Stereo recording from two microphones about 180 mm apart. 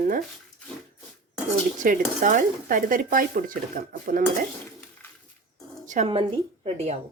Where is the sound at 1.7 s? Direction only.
45° right (ahead or behind).